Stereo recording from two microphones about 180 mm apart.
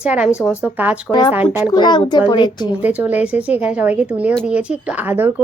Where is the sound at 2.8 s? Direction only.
10° right (ahead or behind).